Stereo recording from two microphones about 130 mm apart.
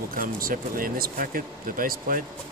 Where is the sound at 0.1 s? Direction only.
90° right.